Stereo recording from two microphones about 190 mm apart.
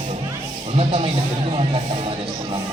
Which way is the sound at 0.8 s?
30° right (ahead or behind).